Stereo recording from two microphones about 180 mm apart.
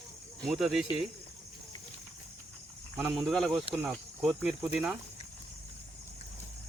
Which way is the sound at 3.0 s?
5° right (ahead or behind).